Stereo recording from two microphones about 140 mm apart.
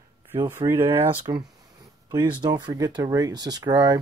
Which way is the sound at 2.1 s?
25° right (ahead or behind).